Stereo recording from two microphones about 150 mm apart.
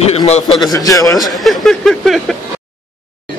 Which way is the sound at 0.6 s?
25° left (ahead or behind).